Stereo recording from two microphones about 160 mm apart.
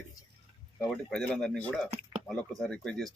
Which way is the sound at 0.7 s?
5° left (ahead or behind).